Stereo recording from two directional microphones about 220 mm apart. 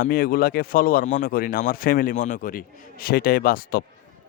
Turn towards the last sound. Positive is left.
turn(degrees=40)  # may be behind; listen again after turning